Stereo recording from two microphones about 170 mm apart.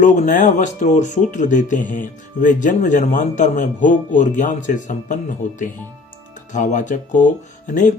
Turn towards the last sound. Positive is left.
turn(degrees=45)  # may be behind; listen again after turning